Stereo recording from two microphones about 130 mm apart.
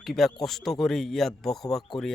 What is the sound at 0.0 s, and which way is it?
Speech, centre (ahead or behind).